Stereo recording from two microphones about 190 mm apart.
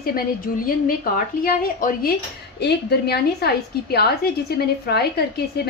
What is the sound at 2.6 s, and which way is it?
A woman's voice, 60° left (ahead or behind).